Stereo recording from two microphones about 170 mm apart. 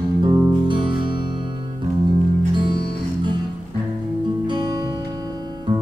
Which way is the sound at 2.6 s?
25° right (ahead or behind).